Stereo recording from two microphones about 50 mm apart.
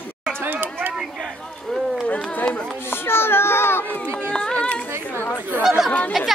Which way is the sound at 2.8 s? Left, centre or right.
Left.